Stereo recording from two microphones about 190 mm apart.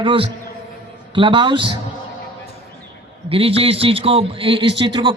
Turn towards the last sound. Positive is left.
turn(degrees=-25)  # may be behind; listen again after turning